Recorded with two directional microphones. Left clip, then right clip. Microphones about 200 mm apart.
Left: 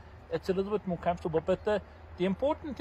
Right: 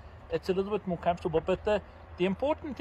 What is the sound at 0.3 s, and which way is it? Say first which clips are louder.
Speech: right 1 dB; centre (ahead or behind).